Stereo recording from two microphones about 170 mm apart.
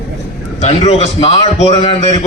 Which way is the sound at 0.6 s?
40° left (ahead or behind).